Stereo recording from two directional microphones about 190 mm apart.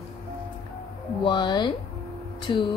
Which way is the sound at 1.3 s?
25° left (ahead or behind).